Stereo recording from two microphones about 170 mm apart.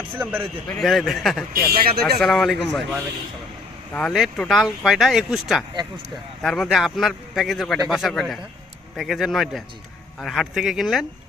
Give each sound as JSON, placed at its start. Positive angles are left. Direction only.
{"t": 0.2, "sound": "a man's voice", "side_deg": -10}
{"t": 1.7, "sound": "speech", "side_deg": -60}
{"t": 2.1, "sound": "speech", "side_deg": 0}